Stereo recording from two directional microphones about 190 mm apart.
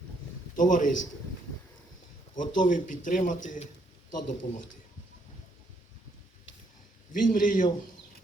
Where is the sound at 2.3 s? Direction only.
45° left (ahead or behind).